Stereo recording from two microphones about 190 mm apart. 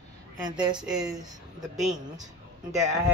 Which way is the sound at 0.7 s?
5° right (ahead or behind).